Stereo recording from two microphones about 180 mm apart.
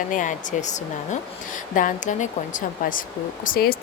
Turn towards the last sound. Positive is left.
turn(degrees=55)  # may be behind; listen again after turning